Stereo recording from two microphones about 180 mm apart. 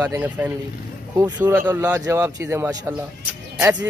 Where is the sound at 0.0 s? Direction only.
10° right (ahead or behind).